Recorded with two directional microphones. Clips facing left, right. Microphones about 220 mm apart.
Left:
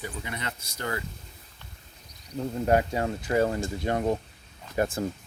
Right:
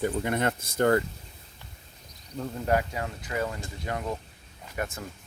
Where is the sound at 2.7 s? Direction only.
30° left (ahead or behind).